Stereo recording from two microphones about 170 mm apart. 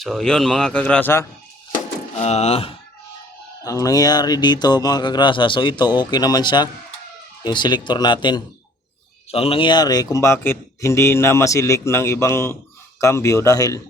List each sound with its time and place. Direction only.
0.0 s a man's voice: centre (ahead or behind)
2.1 s speech: 40° left (ahead or behind)
3.6 s speech: 20° left (ahead or behind)